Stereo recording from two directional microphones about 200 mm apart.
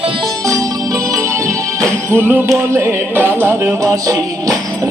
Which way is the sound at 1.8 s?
10° right (ahead or behind).